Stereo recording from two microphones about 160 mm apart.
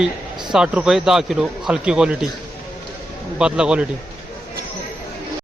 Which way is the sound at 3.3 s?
5° right (ahead or behind).